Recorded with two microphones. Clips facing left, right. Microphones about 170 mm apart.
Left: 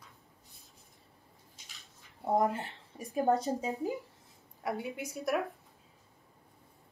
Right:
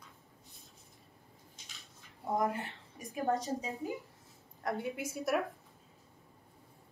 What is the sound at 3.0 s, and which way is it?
Speech, 35° left (ahead or behind).